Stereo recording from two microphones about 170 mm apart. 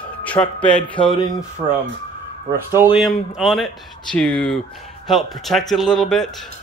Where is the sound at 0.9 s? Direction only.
30° left (ahead or behind).